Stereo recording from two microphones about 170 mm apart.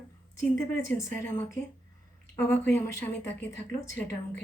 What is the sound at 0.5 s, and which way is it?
A woman's voice, 15° left (ahead or behind).